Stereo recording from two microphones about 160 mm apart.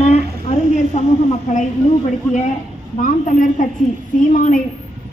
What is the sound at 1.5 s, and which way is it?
A woman's voice, 45° left (ahead or behind).